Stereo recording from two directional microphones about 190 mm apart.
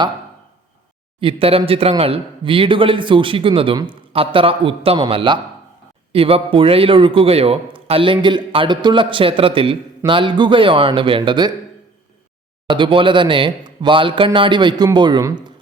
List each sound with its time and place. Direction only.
1.2 s a man's voice: 30° right (ahead or behind)
12.6 s a man's voice: 25° right (ahead or behind)